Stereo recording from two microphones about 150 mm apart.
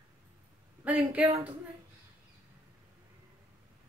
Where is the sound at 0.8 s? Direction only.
10° right (ahead or behind).